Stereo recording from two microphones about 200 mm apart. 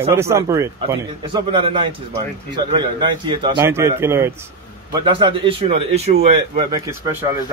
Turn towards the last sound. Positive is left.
turn(degrees=-20)  # may be behind; listen again after turning